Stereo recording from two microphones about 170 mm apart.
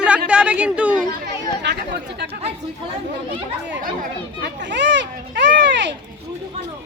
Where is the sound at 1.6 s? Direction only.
80° right.